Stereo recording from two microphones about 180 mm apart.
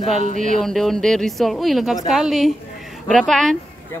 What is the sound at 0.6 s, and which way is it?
Speech, centre (ahead or behind).